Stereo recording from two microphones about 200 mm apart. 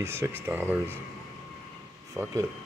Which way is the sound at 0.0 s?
15° right (ahead or behind).